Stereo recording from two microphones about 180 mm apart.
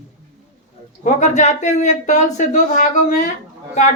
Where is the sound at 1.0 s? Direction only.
40° left (ahead or behind).